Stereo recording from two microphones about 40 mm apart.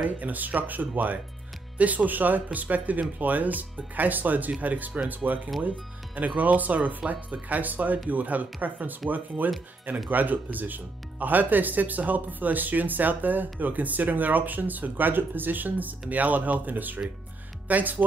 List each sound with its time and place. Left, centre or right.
0.0 s speech: right
10.0 s speech: right